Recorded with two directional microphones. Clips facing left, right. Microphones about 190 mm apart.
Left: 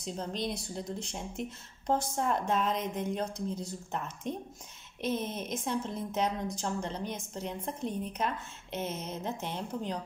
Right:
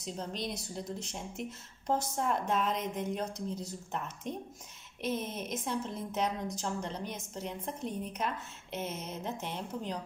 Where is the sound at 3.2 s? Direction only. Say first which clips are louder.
Left 2 dB; 30° left (ahead or behind).